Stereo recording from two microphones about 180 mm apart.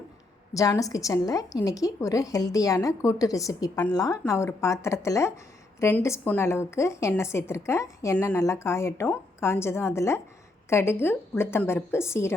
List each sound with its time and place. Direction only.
0.5 s a woman's voice: 20° left (ahead or behind)